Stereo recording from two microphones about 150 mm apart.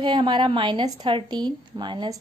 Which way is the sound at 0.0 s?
30° right (ahead or behind).